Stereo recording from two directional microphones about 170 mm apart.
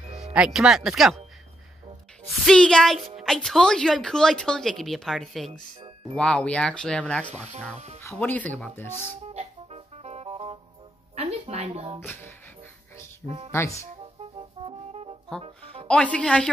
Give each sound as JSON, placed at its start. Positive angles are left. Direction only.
{"t": 0.1, "sound": "speech", "side_deg": -5}
{"t": 2.4, "sound": "a woman's voice", "side_deg": 5}
{"t": 7.3, "sound": "speech", "side_deg": -40}
{"t": 8.0, "sound": "speech", "side_deg": 15}
{"t": 9.1, "sound": "music", "side_deg": -40}
{"t": 11.1, "sound": "a sound", "side_deg": -40}
{"t": 13.5, "sound": "speech", "side_deg": 15}
{"t": 14.2, "sound": "music", "side_deg": -35}
{"t": 15.9, "sound": "speech", "side_deg": 5}